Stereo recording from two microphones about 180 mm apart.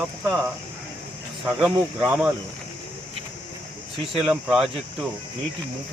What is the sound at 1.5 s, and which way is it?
Speech, 5° right (ahead or behind).